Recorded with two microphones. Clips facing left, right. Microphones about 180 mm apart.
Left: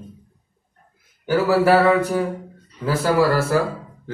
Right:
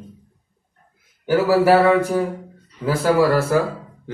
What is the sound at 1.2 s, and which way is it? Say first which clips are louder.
A man's voice: right 1 dB; 10° right (ahead or behind).